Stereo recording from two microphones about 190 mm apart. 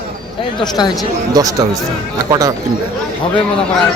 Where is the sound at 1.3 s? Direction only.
20° right (ahead or behind).